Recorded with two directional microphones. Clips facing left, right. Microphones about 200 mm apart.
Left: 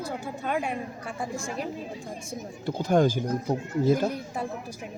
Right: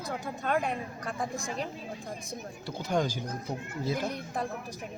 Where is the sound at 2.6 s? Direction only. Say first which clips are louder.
Left 8 dB; 50° left (ahead or behind).